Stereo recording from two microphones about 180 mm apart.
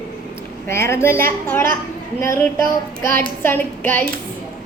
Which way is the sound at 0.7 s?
15° left (ahead or behind).